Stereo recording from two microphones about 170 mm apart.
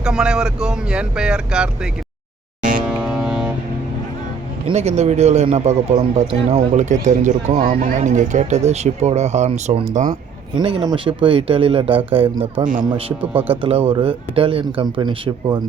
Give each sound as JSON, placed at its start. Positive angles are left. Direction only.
{"t": 0.0, "sound": "speech", "side_deg": -5}
{"t": 2.8, "sound": "ship", "side_deg": -5}
{"t": 4.7, "sound": "speech", "side_deg": -40}
{"t": 10.1, "sound": "speech", "side_deg": -30}